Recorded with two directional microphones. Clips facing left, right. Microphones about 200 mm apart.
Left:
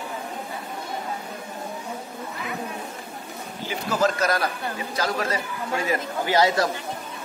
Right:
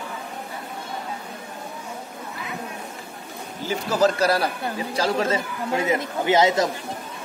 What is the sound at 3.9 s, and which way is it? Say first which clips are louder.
A man's voice: right 3 dB; 35° right (ahead or behind).